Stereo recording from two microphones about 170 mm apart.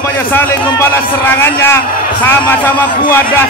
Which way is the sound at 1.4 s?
15° left (ahead or behind).